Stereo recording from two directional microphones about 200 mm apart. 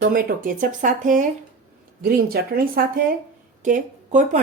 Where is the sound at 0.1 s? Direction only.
45° right (ahead or behind).